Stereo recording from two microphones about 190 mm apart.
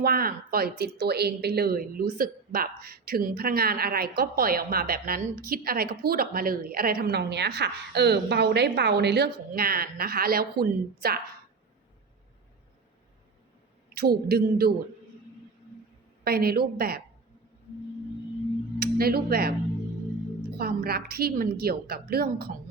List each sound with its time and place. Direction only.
0.0 s a woman's voice: 50° right (ahead or behind)
13.9 s a man's voice: 55° right (ahead or behind)
16.2 s a man's voice: 55° right (ahead or behind)
18.8 s speech: 55° right (ahead or behind)
20.6 s a woman's voice: 55° right (ahead or behind)